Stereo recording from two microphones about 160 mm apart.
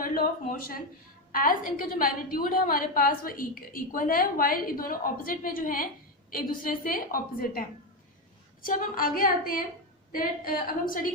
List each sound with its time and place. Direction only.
0.0 s a woman's voice: 65° left (ahead or behind)
8.6 s a woman's voice: 60° left (ahead or behind)